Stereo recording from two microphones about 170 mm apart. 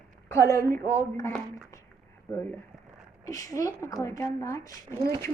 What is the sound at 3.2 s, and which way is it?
A woman's voice, 20° left (ahead or behind).